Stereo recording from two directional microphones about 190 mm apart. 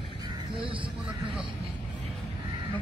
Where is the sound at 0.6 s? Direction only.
25° right (ahead or behind).